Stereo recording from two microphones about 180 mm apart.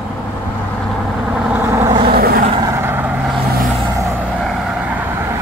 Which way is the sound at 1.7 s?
15° right (ahead or behind).